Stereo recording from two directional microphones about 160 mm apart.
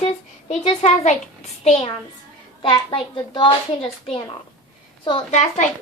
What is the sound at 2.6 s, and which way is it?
A child's voice, 30° left (ahead or behind).